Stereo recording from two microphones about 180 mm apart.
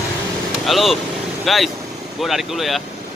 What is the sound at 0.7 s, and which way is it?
Speech, centre (ahead or behind).